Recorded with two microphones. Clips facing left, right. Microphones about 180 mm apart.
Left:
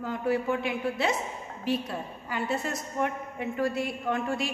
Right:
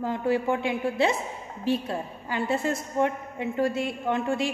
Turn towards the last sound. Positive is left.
turn(degrees=-25)  # may be behind; listen again after turning